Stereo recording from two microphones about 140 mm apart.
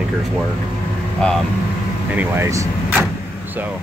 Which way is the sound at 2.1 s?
15° right (ahead or behind).